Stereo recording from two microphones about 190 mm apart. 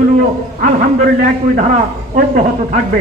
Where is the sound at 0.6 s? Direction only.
40° right (ahead or behind).